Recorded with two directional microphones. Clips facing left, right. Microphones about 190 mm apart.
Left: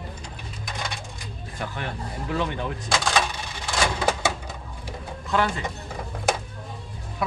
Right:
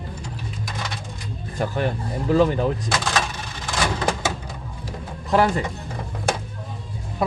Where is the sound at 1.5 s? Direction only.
40° right (ahead or behind).